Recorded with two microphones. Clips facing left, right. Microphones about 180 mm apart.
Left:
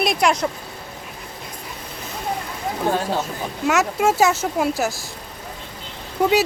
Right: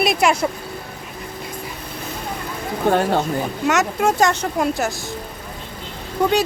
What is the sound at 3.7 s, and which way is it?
Speech, centre (ahead or behind).